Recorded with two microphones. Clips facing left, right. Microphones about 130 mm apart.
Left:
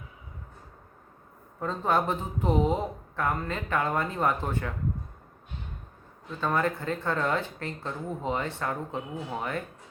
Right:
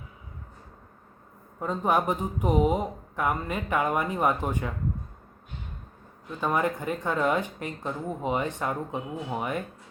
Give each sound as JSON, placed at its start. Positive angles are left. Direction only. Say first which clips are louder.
{"t": 1.5, "sound": "speech", "louder": "right 1 dB", "side_deg": -15}
{"t": 6.4, "sound": "speech", "louder": "right 1 dB", "side_deg": -15}